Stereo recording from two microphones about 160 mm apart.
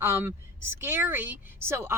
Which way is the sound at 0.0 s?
15° right (ahead or behind).